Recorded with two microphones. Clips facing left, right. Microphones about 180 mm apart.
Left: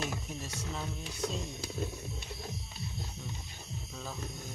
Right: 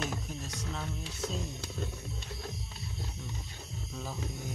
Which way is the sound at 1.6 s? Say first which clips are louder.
Left 2 dB; 10° left (ahead or behind).